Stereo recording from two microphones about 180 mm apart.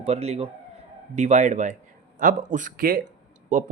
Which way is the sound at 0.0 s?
35° right (ahead or behind).